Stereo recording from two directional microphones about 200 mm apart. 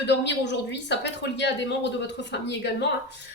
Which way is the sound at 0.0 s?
60° left (ahead or behind).